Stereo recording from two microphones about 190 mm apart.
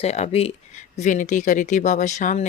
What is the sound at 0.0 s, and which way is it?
Speech, 35° left (ahead or behind).